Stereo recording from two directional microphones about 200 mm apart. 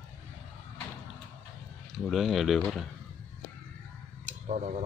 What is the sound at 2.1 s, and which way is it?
Speech, centre (ahead or behind).